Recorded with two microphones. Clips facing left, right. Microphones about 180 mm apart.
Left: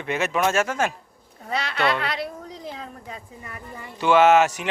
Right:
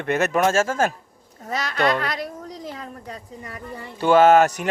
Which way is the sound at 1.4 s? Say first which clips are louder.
Right 2 dB; 40° right (ahead or behind).